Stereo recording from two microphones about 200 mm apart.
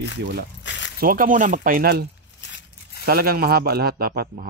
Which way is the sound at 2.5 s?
65° left (ahead or behind).